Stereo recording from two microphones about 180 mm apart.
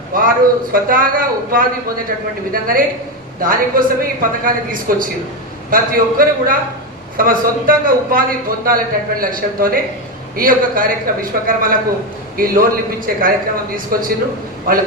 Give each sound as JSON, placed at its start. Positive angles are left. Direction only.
{"t": 0.1, "sound": "a man's voice", "side_deg": -50}